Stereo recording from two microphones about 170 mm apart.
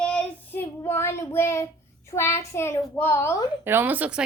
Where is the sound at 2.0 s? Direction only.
15° left (ahead or behind).